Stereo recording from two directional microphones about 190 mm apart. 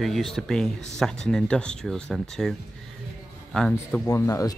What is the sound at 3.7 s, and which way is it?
Speech, 15° left (ahead or behind).